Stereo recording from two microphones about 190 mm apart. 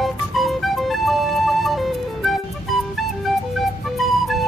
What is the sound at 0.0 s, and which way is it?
Music, centre (ahead or behind).